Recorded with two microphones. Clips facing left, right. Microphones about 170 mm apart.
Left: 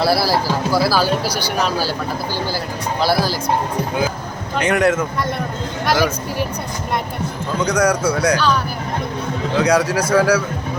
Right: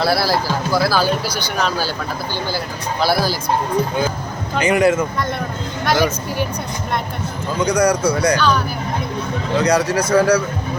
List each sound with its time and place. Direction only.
0.0 s speech: 5° left (ahead or behind)
3.0 s speech: centre (ahead or behind)
4.5 s speech: centre (ahead or behind)
7.6 s speech: centre (ahead or behind)